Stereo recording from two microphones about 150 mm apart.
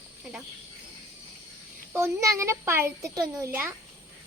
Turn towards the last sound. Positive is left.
turn(degrees=-15)  # may be behind; listen again after turning